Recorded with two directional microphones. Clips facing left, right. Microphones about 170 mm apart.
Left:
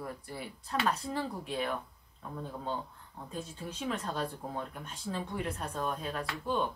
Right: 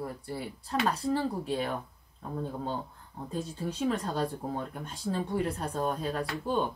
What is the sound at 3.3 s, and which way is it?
Speech, 35° right (ahead or behind).